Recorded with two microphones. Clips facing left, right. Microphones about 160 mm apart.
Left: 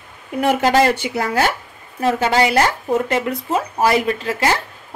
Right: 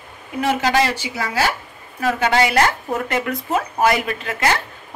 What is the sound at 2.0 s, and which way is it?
A woman's voice, 30° left (ahead or behind).